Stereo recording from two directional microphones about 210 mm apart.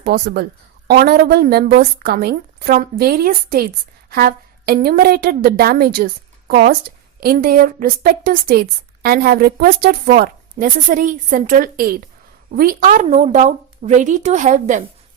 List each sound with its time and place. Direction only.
0.0 s a woman's voice: 50° right (ahead or behind); by 14.8 s 35° right (ahead or behind)